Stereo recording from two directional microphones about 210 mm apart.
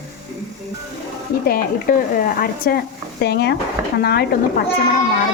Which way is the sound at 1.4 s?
45° left (ahead or behind).